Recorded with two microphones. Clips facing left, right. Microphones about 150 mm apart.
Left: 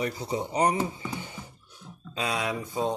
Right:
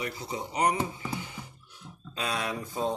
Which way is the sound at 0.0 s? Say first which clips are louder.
Left 5 dB; 30° left (ahead or behind).